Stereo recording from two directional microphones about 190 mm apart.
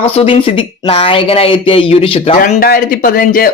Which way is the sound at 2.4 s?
50° left (ahead or behind).